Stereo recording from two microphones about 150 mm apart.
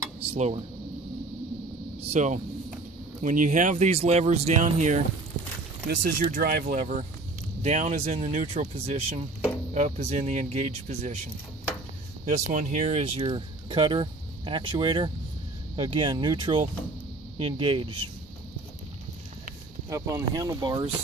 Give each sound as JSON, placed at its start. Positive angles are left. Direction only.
{"t": 0.3, "sound": "speech", "side_deg": -45}
{"t": 2.0, "sound": "speech", "side_deg": -50}
{"t": 5.4, "sound": "a sound", "side_deg": -60}
{"t": 5.9, "sound": "speech", "side_deg": -80}
{"t": 7.6, "sound": "speech", "side_deg": -50}
{"t": 12.3, "sound": "speech", "side_deg": -55}
{"t": 19.9, "sound": "speech", "side_deg": -20}